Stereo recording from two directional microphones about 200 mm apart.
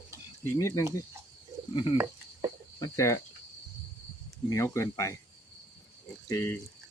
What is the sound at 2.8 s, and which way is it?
Speech, 15° left (ahead or behind).